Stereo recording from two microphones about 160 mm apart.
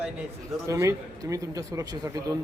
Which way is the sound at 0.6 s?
20° right (ahead or behind).